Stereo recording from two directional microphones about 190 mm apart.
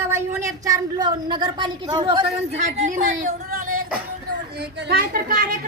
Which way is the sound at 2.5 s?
40° right (ahead or behind).